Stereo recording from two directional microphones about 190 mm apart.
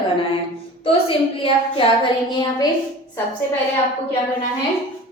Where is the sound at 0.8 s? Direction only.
30° left (ahead or behind).